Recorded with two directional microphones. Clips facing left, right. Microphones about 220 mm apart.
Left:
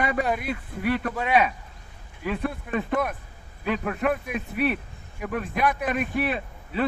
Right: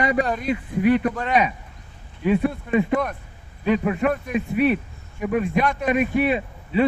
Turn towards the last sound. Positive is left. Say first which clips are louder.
# right 6 dB
turn(degrees=-5)  # may be behind; listen again after turning